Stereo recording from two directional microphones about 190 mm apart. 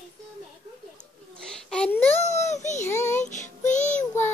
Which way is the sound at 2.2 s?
35° left (ahead or behind).